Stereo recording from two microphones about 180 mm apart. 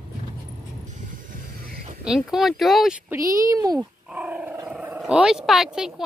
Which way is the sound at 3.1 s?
20° right (ahead or behind).